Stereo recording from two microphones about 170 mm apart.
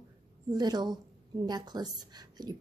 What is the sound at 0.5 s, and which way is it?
Speech, 25° right (ahead or behind).